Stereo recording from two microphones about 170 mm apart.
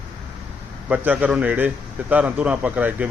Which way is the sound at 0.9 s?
10° right (ahead or behind).